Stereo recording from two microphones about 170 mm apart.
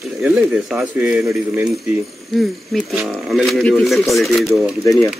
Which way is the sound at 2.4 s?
Centre (ahead or behind).